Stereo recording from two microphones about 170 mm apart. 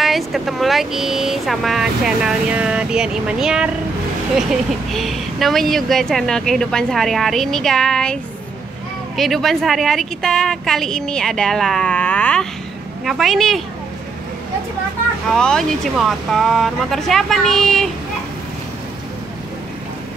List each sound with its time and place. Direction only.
0.0 s a woman's voice: centre (ahead or behind)
15.3 s a woman's voice: 5° left (ahead or behind)